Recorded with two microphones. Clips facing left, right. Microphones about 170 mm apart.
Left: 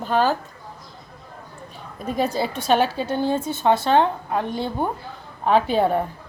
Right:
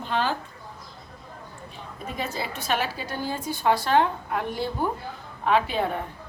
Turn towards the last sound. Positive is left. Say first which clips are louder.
# left 5 dB
turn(degrees=35)  # may be behind; listen again after turning